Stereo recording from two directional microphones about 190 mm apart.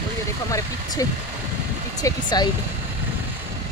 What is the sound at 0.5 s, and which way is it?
Speech, 15° left (ahead or behind).